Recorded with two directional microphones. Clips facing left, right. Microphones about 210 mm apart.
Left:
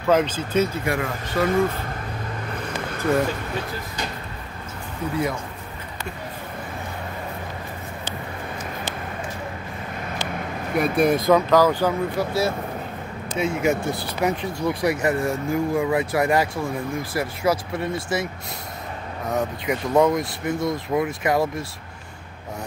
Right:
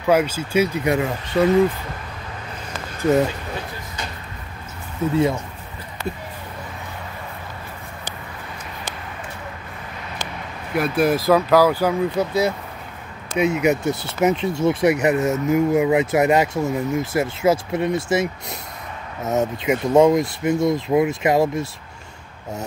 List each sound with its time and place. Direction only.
0.1 s speech: 10° right (ahead or behind)
10.7 s speech: centre (ahead or behind); by 21.6 s 25° right (ahead or behind)